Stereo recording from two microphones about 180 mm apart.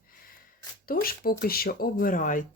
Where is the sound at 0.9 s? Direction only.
55° left (ahead or behind).